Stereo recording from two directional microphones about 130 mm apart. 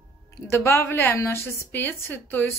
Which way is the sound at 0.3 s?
20° left (ahead or behind).